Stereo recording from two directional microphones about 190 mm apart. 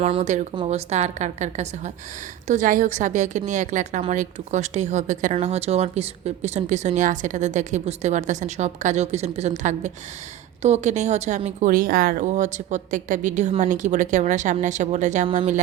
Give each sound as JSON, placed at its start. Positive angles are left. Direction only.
{"t": 0.0, "sound": "speech", "side_deg": -35}